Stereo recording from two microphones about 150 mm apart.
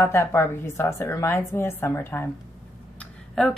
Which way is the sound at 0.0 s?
15° left (ahead or behind).